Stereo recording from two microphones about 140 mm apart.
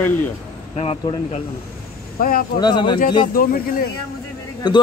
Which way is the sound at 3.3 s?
90° left.